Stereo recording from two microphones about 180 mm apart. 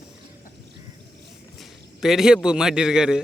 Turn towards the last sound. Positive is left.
turn(degrees=-5)  # may be behind; listen again after turning